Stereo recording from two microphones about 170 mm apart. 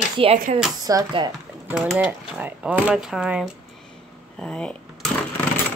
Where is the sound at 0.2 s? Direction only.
30° right (ahead or behind).